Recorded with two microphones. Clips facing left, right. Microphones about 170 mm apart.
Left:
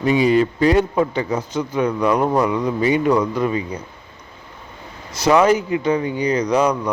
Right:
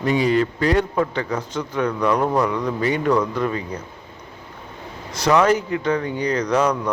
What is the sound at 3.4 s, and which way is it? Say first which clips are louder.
Speech: left 3 dB; 10° left (ahead or behind).